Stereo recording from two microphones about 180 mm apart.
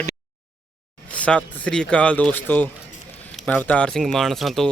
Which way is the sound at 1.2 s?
5° left (ahead or behind).